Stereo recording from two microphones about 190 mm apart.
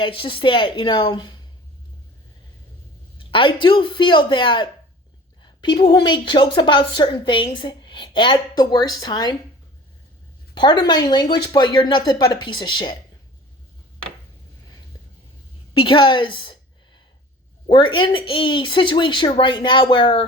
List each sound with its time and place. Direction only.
0.0 s a woman's voice: 25° left (ahead or behind)
3.2 s a woman's voice: 25° left (ahead or behind)
10.5 s a woman's voice: 25° left (ahead or behind)
15.8 s a woman's voice: 25° left (ahead or behind)
17.7 s a woman's voice: 25° left (ahead or behind)